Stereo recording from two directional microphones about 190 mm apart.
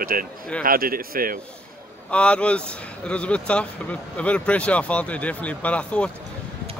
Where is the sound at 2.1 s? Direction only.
5° left (ahead or behind).